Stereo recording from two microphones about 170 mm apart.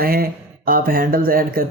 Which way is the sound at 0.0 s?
60° right (ahead or behind).